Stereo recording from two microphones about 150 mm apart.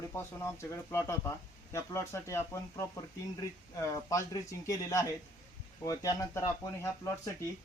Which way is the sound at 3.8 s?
20° left (ahead or behind).